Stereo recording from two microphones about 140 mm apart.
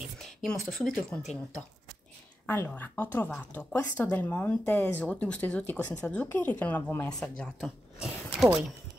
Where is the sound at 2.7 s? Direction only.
10° left (ahead or behind).